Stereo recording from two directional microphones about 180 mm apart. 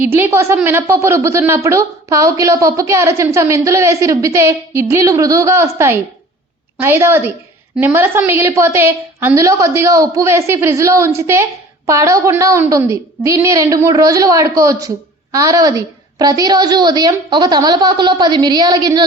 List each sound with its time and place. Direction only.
0.0 s a woman's voice: 10° right (ahead or behind)